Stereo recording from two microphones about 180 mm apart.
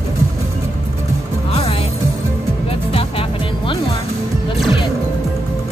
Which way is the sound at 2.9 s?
30° left (ahead or behind).